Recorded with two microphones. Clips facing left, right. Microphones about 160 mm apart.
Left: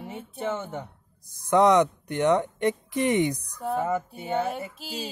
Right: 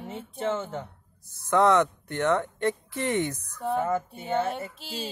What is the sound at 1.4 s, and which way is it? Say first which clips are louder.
Speech: left 2 dB; 15° left (ahead or behind).